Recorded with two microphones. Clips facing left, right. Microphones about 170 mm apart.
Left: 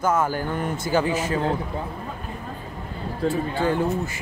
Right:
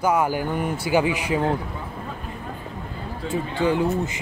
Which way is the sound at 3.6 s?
20° right (ahead or behind).